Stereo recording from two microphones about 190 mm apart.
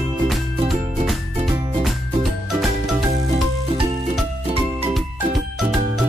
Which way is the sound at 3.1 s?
35° right (ahead or behind).